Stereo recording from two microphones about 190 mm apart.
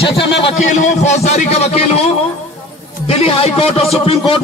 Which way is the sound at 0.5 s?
40° left (ahead or behind).